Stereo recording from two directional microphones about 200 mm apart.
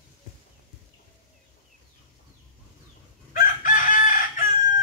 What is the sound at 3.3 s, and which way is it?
Chicken, 40° left (ahead or behind).